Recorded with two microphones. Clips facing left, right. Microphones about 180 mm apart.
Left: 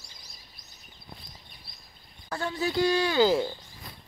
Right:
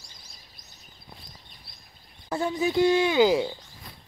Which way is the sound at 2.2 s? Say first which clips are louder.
Right 4 dB; 20° right (ahead or behind).